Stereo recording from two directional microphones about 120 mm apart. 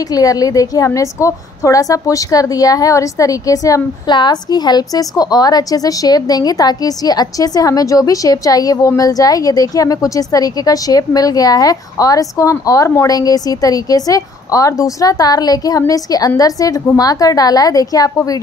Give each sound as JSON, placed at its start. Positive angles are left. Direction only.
{"t": 0.1, "sound": "a woman's voice", "side_deg": 30}